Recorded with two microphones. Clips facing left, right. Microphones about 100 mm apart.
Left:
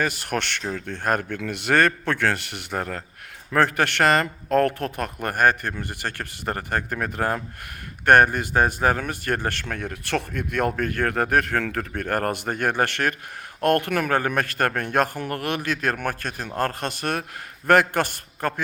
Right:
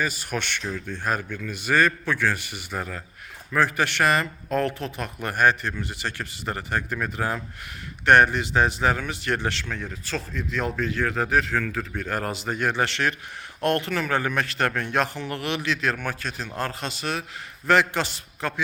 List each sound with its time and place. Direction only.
0.0 s a man's voice: 60° left (ahead or behind)